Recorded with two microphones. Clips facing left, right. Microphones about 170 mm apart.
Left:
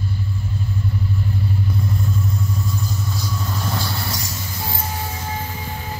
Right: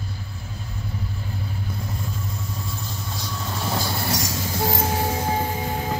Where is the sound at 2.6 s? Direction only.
Centre (ahead or behind).